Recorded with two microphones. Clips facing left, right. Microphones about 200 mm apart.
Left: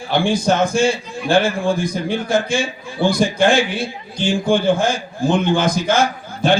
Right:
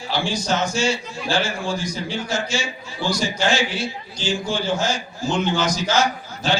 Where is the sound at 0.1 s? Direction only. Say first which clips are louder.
Left 7 dB; 55° left (ahead or behind).